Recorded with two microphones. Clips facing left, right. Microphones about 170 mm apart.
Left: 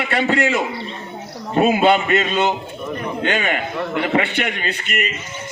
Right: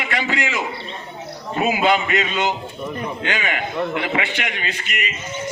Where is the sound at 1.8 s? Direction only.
40° left (ahead or behind).